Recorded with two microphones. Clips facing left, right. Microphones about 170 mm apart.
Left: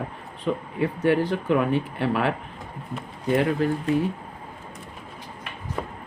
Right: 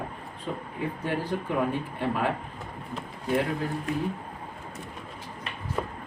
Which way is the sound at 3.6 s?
90° left.